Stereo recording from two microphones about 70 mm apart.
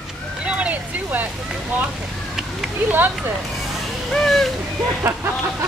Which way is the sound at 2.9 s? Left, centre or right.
Right.